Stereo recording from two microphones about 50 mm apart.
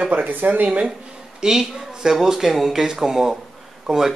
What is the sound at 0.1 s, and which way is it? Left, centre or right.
Speech, right.